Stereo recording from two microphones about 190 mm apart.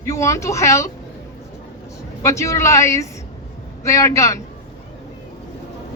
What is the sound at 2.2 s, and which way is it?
A woman's voice, 15° left (ahead or behind).